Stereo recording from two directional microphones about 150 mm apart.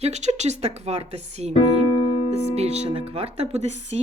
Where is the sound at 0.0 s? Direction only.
50° right (ahead or behind).